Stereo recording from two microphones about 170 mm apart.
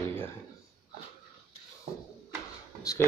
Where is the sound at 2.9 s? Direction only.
20° left (ahead or behind).